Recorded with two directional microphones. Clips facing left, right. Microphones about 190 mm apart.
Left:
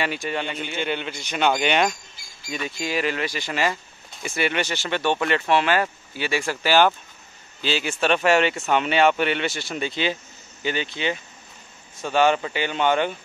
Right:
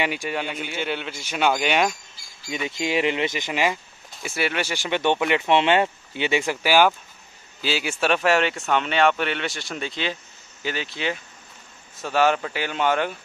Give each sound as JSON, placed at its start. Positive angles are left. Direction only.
{"t": 0.0, "sound": "speech", "side_deg": -10}
{"t": 2.5, "sound": "speech", "side_deg": -20}
{"t": 4.1, "sound": "speech", "side_deg": -5}